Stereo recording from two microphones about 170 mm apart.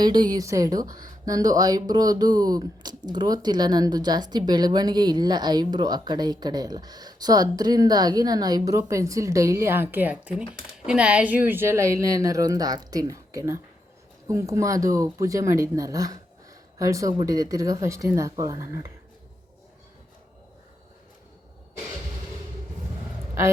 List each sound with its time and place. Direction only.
0.0 s speech: 25° right (ahead or behind)